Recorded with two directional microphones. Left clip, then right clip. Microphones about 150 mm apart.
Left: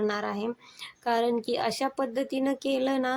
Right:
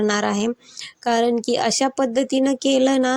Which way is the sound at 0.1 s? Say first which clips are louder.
Right 9 dB; 50° right (ahead or behind).